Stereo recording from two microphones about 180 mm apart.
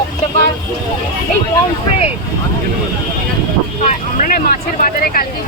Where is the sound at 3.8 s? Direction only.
50° left (ahead or behind).